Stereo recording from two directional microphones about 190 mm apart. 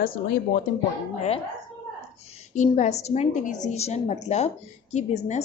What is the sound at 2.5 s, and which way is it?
A woman's voice, 40° left (ahead or behind).